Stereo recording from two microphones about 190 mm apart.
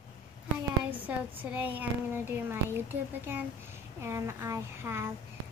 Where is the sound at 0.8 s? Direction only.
10° right (ahead or behind).